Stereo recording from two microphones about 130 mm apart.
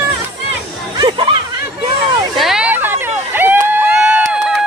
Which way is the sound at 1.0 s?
40° right (ahead or behind).